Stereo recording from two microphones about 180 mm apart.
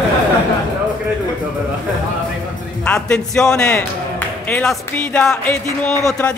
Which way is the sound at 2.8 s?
5° left (ahead or behind).